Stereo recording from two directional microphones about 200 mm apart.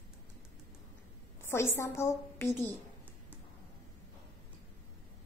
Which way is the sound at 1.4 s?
10° left (ahead or behind).